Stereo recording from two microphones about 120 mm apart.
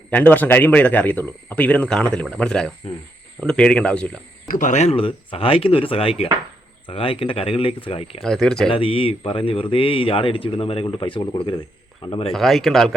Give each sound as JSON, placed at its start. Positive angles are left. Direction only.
{"t": 0.1, "sound": "speech", "side_deg": 10}
{"t": 4.6, "sound": "speech", "side_deg": 75}
{"t": 8.2, "sound": "speech", "side_deg": 5}
{"t": 8.7, "sound": "speech", "side_deg": 50}
{"t": 12.3, "sound": "speech", "side_deg": 0}